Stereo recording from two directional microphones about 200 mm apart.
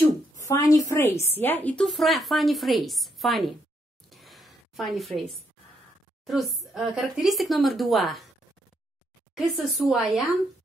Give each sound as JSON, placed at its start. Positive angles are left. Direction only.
{"t": 0.4, "sound": "a woman's voice", "side_deg": 15}
{"t": 4.1, "sound": "a sound", "side_deg": 0}
{"t": 6.2, "sound": "a woman's voice", "side_deg": 0}
{"t": 9.3, "sound": "a woman's voice", "side_deg": 0}